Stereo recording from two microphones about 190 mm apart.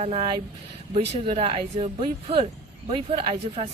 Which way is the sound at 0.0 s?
35° right (ahead or behind).